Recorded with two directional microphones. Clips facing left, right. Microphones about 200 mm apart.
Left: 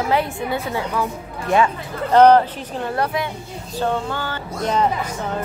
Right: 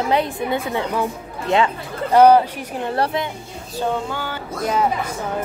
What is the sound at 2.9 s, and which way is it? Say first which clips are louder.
Speech: right 1 dB; 30° right (ahead or behind).